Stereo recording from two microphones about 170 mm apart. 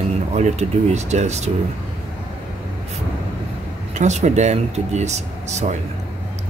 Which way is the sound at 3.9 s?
40° right (ahead or behind).